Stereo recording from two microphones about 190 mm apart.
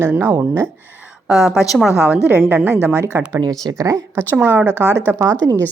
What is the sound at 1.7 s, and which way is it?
A woman's voice, 5° right (ahead or behind).